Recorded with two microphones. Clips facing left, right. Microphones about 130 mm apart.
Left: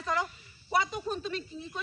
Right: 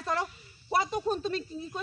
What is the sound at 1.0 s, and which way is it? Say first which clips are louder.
Speech: right 4 dB; 35° right (ahead or behind).